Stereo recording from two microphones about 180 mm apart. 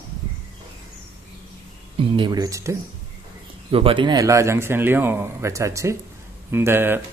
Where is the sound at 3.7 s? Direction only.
30° right (ahead or behind).